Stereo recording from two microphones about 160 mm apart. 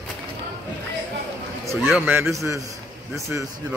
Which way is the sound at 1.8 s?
10° right (ahead or behind).